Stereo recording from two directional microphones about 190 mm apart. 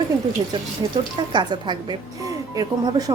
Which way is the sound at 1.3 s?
25° right (ahead or behind).